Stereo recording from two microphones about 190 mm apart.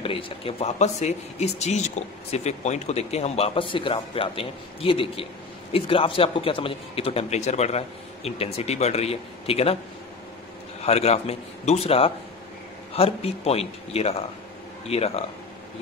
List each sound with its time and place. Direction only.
0.0 s a man's voice: 30° left (ahead or behind)
10.8 s a man's voice: 35° left (ahead or behind)